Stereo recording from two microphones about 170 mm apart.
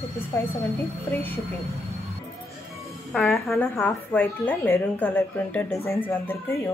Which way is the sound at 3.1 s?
Centre (ahead or behind).